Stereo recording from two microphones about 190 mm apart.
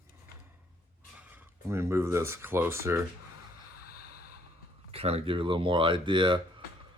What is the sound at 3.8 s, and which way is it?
Snort, 55° left (ahead or behind).